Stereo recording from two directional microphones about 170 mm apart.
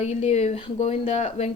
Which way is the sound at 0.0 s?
40° left (ahead or behind).